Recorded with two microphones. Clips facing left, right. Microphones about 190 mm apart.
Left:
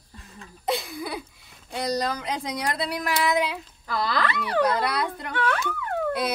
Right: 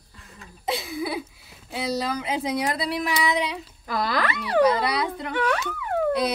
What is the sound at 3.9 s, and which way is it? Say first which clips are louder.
Speech: right 1 dB; 20° right (ahead or behind).